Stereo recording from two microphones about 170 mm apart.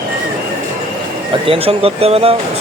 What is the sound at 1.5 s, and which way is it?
Speech, 35° right (ahead or behind).